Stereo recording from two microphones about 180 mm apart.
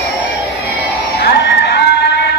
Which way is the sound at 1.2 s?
70° left (ahead or behind).